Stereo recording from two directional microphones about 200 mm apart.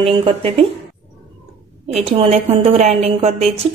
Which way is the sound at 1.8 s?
30° right (ahead or behind).